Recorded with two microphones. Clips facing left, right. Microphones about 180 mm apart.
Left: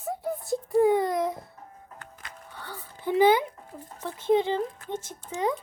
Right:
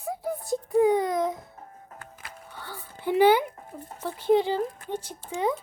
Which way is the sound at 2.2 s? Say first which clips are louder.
Even; 5° right (ahead or behind).